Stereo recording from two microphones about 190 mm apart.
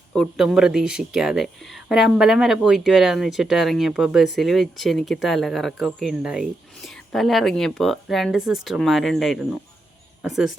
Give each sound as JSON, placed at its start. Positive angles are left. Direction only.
{"t": 0.1, "sound": "speech", "side_deg": 0}